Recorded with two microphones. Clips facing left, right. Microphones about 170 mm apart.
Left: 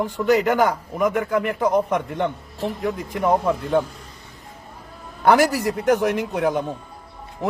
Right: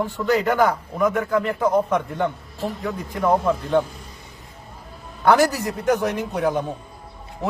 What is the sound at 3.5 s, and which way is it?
Speech, 5° left (ahead or behind).